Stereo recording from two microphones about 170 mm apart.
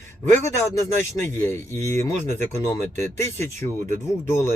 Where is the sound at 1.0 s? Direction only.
15° left (ahead or behind).